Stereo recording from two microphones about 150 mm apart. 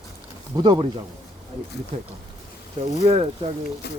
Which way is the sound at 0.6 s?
30° right (ahead or behind).